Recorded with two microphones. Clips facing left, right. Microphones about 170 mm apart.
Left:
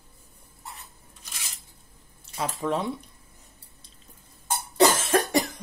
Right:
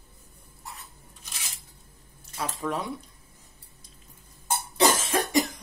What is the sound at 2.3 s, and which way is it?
Speech, 25° left (ahead or behind).